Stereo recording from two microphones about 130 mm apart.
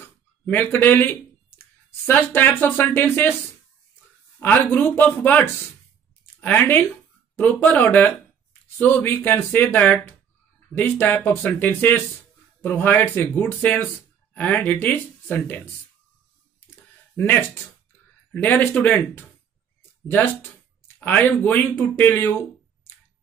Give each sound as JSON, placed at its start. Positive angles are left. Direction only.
{"t": 0.0, "sound": "a sound", "side_deg": 15}
{"t": 1.6, "sound": "speech", "side_deg": 15}
{"t": 4.4, "sound": "speech", "side_deg": 15}
{"t": 6.4, "sound": "speech", "side_deg": 15}
{"t": 17.2, "sound": "speech", "side_deg": 15}